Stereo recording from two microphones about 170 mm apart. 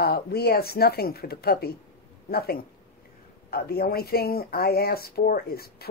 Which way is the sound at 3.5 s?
65° left (ahead or behind).